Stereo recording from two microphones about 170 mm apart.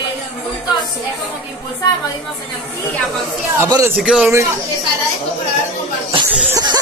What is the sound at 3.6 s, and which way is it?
Speech, 20° right (ahead or behind).